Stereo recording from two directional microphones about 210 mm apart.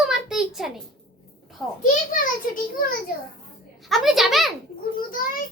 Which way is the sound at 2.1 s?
40° left (ahead or behind).